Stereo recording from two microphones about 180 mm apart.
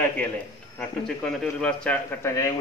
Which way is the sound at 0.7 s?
5° left (ahead or behind).